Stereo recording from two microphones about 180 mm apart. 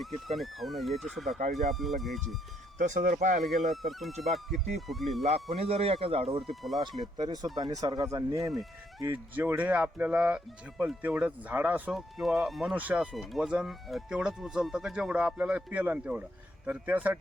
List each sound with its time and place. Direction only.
0.0 s speech: centre (ahead or behind)
2.7 s speech: 40° right (ahead or behind)
3.7 s speech: centre (ahead or behind)
5.2 s speech: 35° right (ahead or behind)
6.4 s speech: centre (ahead or behind)
7.7 s speech: 20° right (ahead or behind)